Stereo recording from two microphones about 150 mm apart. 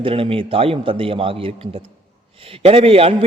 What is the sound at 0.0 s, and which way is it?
A man's voice, 40° right (ahead or behind).